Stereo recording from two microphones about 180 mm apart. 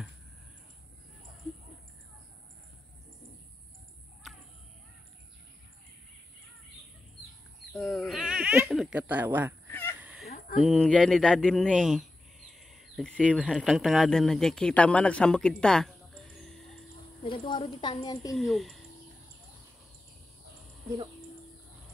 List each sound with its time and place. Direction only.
4.2 s a sound: centre (ahead or behind)
7.7 s speech: 5° left (ahead or behind)
9.7 s honk: 10° left (ahead or behind)
10.0 s fowl: 5° right (ahead or behind)
10.6 s speech: 5° left (ahead or behind)
17.2 s a woman's voice: 30° left (ahead or behind)
18.3 s speech: centre (ahead or behind)